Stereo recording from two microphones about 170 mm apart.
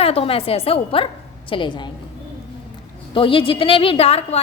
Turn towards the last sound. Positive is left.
turn(degrees=35)  # may be behind; listen again after turning